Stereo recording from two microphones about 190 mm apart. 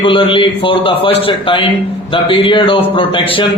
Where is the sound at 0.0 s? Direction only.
25° left (ahead or behind).